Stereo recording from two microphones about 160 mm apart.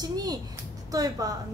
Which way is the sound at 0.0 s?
25° right (ahead or behind).